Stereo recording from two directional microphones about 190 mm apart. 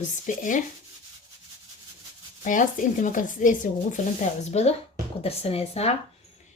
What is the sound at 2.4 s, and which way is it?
Speech, 45° left (ahead or behind).